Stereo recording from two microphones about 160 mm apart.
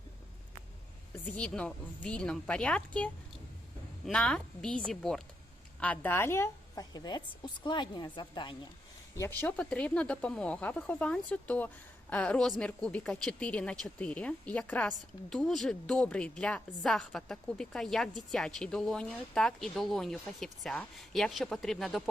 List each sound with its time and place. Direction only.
1.2 s a woman's voice: 10° left (ahead or behind)
6.9 s a woman's voice: 25° left (ahead or behind)
9.4 s a woman's voice: 10° left (ahead or behind)